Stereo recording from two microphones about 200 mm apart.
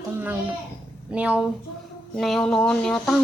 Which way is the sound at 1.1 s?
5° right (ahead or behind).